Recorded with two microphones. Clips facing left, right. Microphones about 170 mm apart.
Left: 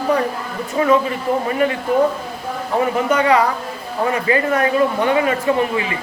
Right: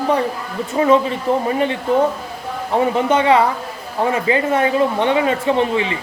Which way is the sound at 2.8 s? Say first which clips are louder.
Right 1 dB; 25° right (ahead or behind).